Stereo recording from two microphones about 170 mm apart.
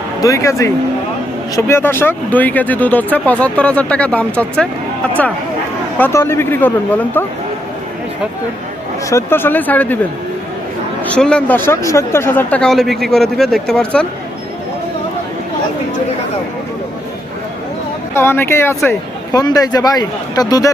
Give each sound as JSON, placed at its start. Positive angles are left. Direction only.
{"t": 0.2, "sound": "speech", "side_deg": 20}
{"t": 6.0, "sound": "speech", "side_deg": 15}
{"t": 9.0, "sound": "speech", "side_deg": 15}
{"t": 11.0, "sound": "speech", "side_deg": 5}
{"t": 18.1, "sound": "speech", "side_deg": 15}